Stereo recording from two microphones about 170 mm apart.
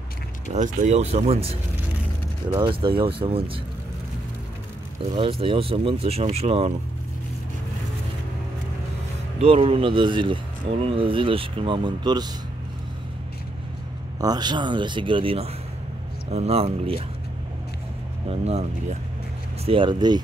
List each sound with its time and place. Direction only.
0.5 s speech: 45° right (ahead or behind)
5.2 s speech: 30° right (ahead or behind)
9.4 s speech: 35° right (ahead or behind)
14.2 s speech: 25° right (ahead or behind)
18.3 s speech: 40° right (ahead or behind)